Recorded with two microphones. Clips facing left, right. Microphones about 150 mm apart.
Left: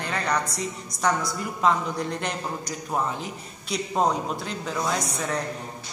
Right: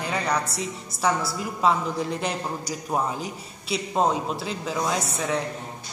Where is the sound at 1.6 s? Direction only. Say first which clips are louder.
Right 1 dB; 5° right (ahead or behind).